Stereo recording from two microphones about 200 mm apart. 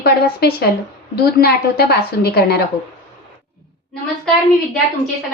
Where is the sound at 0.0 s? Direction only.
55° left (ahead or behind).